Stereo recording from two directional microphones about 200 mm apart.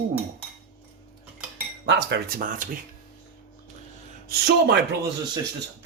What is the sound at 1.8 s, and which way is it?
Speech, 60° right (ahead or behind).